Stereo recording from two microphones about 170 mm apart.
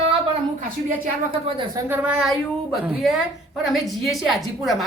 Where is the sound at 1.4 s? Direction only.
25° right (ahead or behind).